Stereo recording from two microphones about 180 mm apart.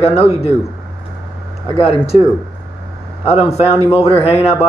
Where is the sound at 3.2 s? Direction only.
35° left (ahead or behind).